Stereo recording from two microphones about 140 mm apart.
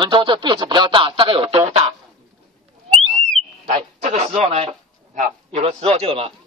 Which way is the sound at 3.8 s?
50° right (ahead or behind).